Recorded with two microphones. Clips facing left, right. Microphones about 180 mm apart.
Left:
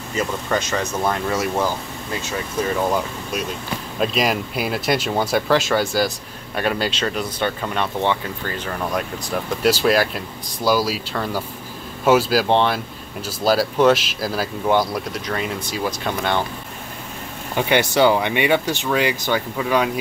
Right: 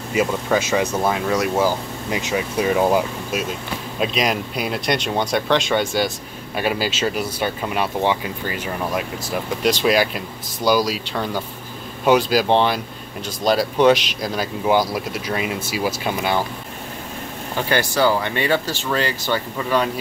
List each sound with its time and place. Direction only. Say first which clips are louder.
0.1 s speech: right 3 dB; 10° right (ahead or behind)
2.0 s speech: right 5 dB; 15° right (ahead or behind)
4.0 s speech: left 1 dB; centre (ahead or behind)
17.6 s speech: left 3 dB; 20° left (ahead or behind)